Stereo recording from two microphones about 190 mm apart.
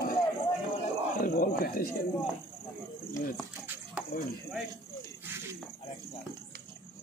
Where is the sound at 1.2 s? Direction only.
50° left (ahead or behind).